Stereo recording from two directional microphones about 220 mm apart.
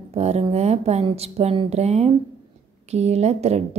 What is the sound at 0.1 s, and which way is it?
A woman's voice, 30° right (ahead or behind).